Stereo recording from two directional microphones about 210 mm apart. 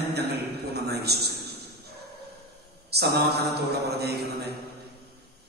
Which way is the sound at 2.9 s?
50° right (ahead or behind).